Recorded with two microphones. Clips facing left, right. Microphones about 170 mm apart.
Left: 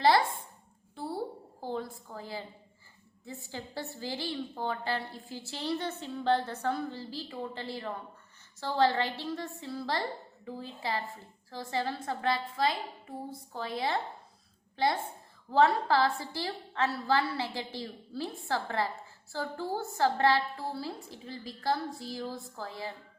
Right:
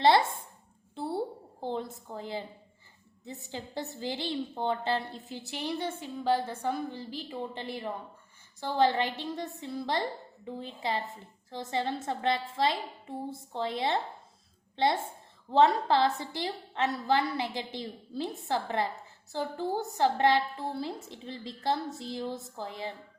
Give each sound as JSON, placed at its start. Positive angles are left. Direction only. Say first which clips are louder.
{"t": 0.0, "sound": "speech", "louder": "right 2 dB", "side_deg": -25}
{"t": 0.9, "sound": "a sound", "louder": "right 3 dB", "side_deg": -25}
{"t": 1.6, "sound": "a woman's voice", "louder": "right 2 dB", "side_deg": -20}
{"t": 15.5, "sound": "a woman's voice", "louder": "right 1 dB", "side_deg": -20}